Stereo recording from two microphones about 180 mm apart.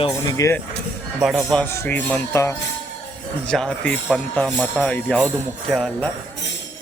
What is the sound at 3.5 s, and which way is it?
Speech, 5° left (ahead or behind).